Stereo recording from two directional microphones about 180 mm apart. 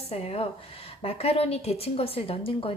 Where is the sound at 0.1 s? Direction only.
35° left (ahead or behind).